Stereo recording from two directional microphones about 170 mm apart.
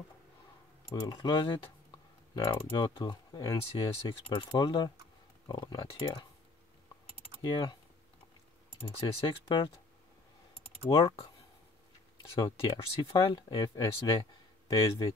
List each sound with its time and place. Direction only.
0.8 s speech: 25° left (ahead or behind)
7.4 s speech: 30° left (ahead or behind)
9.0 s speech: 30° left (ahead or behind)
10.9 s speech: 20° left (ahead or behind)